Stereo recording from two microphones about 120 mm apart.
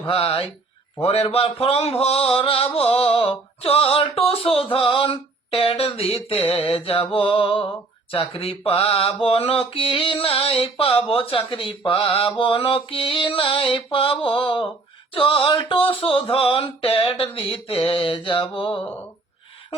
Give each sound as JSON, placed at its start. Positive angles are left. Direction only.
{"t": 0.1, "sound": "mantra", "side_deg": 50}
{"t": 1.0, "sound": "speech", "side_deg": 55}
{"t": 1.6, "sound": "mantra", "side_deg": 55}